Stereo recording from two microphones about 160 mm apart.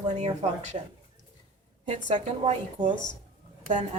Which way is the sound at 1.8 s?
40° right (ahead or behind).